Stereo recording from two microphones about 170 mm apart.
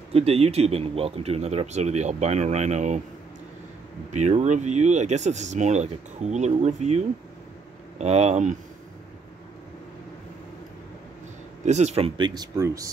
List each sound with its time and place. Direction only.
0.1 s speech: 35° right (ahead or behind)
4.1 s speech: 40° right (ahead or behind)
11.6 s speech: 40° right (ahead or behind); by 12.8 s 20° right (ahead or behind)